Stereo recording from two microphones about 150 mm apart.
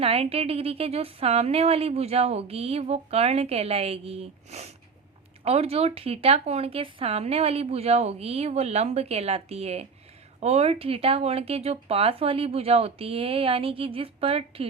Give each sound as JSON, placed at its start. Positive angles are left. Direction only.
{"t": 0.0, "sound": "a woman's voice", "side_deg": -40}